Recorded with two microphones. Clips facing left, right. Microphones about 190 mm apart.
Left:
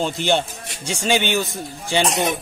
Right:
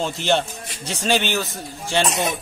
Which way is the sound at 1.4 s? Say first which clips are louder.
Left 2 dB; centre (ahead or behind).